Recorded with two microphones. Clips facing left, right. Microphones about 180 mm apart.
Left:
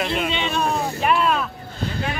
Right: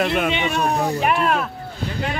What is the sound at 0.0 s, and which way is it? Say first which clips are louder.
Speech: right 4 dB; 55° right (ahead or behind).